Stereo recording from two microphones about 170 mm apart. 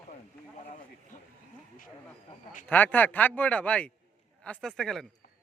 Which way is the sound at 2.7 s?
10° left (ahead or behind).